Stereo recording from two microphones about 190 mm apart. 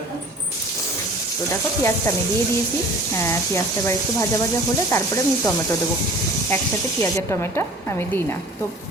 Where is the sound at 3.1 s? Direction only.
15° left (ahead or behind).